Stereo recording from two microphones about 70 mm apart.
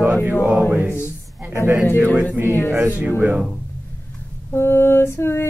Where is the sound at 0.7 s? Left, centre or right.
Right.